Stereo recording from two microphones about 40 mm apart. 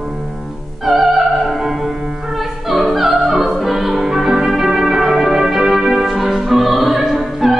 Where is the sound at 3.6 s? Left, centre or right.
Centre.